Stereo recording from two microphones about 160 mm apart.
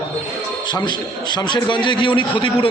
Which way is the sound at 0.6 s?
30° left (ahead or behind).